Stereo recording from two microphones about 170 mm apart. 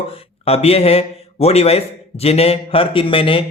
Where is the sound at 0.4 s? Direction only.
35° left (ahead or behind).